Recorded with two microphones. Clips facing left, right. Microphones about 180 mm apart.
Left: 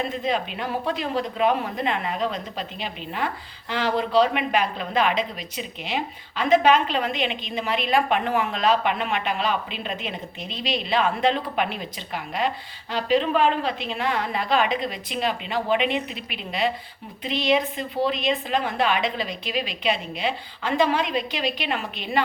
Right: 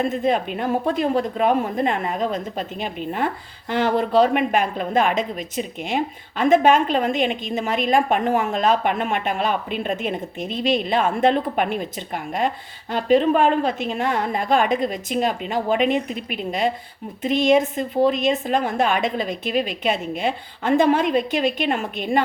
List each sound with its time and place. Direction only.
0.0 s speech: 50° right (ahead or behind)